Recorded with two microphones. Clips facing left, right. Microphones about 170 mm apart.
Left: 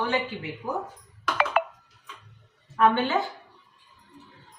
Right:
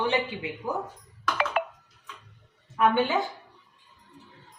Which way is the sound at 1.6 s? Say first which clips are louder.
Left 5 dB; 70° left (ahead or behind).